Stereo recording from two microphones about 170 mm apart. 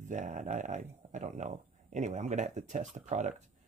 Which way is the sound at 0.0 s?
45° right (ahead or behind).